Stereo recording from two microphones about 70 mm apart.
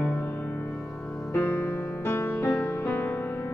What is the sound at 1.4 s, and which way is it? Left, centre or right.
Music, left.